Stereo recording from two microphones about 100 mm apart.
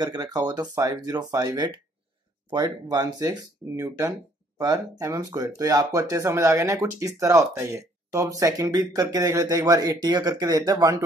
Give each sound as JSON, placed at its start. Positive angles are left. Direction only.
{"t": 0.0, "sound": "speech", "side_deg": -40}
{"t": 2.5, "sound": "speech", "side_deg": -40}